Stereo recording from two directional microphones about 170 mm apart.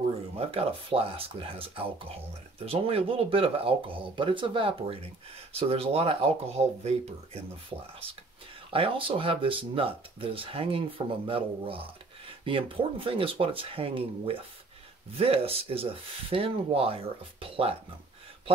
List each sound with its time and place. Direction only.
0.4 s speech: 35° right (ahead or behind)
8.6 s speech: 30° right (ahead or behind)